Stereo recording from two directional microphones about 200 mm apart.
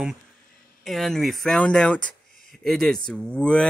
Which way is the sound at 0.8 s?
Centre (ahead or behind).